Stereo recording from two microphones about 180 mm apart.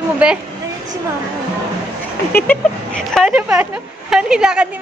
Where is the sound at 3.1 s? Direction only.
5° right (ahead or behind).